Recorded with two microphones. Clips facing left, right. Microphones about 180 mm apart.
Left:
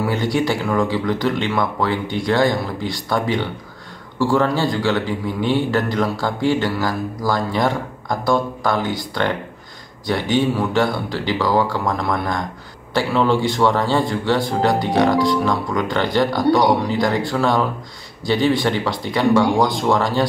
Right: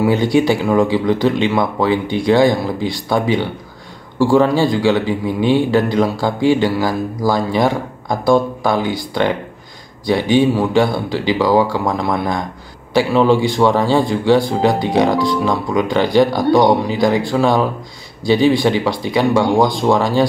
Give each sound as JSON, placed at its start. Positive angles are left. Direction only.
{"t": 0.0, "sound": "speech", "side_deg": -15}